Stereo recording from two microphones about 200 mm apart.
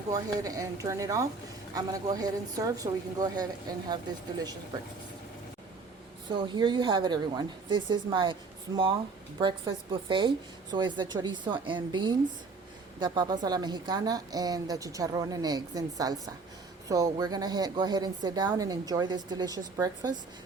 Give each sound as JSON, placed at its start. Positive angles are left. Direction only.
{"t": 0.1, "sound": "speech", "side_deg": -15}
{"t": 6.2, "sound": "speech", "side_deg": -25}